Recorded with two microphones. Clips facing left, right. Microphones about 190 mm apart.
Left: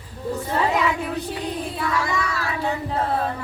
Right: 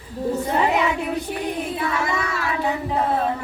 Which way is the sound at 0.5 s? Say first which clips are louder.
Even; 20° right (ahead or behind).